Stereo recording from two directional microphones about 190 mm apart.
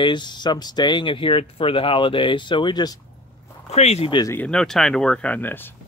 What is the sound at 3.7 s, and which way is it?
Speech, 35° left (ahead or behind).